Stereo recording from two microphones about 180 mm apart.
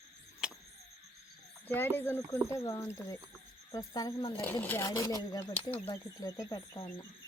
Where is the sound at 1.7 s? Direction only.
10° left (ahead or behind).